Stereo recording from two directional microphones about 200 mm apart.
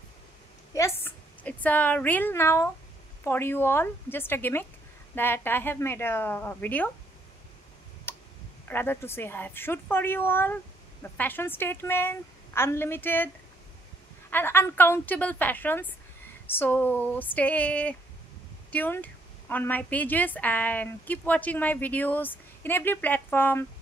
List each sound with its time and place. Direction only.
0.7 s a woman's voice: 15° left (ahead or behind)
8.1 s clicking: 10° left (ahead or behind)
8.6 s a woman's voice: 10° left (ahead or behind)
14.3 s a woman's voice: 10° left (ahead or behind)